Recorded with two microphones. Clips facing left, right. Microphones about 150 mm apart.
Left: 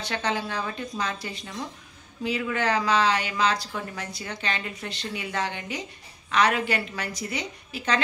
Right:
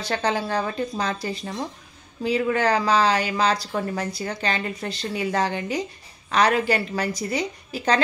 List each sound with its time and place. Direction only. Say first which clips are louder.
0.0 s speech: right 4 dB; 35° right (ahead or behind)